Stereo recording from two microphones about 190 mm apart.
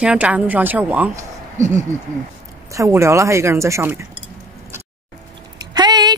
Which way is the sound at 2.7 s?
15° right (ahead or behind).